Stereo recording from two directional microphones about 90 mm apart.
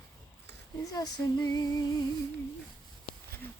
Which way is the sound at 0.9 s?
45° left (ahead or behind).